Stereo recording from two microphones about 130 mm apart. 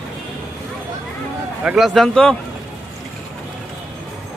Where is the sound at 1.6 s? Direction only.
Centre (ahead or behind).